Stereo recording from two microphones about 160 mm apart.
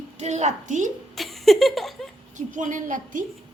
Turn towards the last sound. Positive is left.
turn(degrees=-55)  # may be behind; listen again after turning